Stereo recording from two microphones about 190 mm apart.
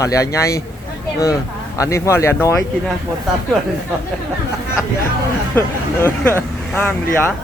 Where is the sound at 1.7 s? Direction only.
15° left (ahead or behind).